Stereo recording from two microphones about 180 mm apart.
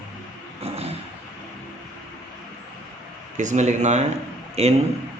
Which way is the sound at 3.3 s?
45° right (ahead or behind).